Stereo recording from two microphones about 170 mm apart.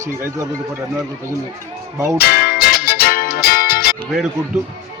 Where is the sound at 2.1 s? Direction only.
60° left (ahead or behind).